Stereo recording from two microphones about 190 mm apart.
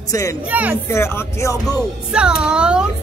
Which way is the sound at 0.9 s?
15° left (ahead or behind).